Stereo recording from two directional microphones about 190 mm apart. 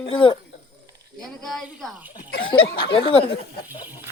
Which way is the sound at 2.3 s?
55° left (ahead or behind).